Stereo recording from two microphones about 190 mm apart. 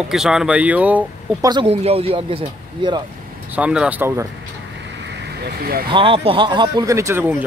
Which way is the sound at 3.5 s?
5° right (ahead or behind).